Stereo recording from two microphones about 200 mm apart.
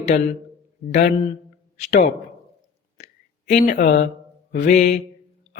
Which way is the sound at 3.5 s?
35° left (ahead or behind).